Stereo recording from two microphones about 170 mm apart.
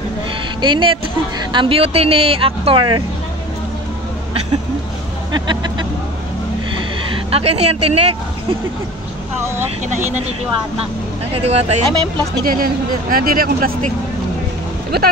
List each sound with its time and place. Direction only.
0.6 s speech: 30° right (ahead or behind)
5.3 s speech: 25° right (ahead or behind)
7.2 s speech: 35° right (ahead or behind)
11.3 s speech: 35° right (ahead or behind)
12.4 s speech: 55° right (ahead or behind)
14.9 s speech: 65° right (ahead or behind)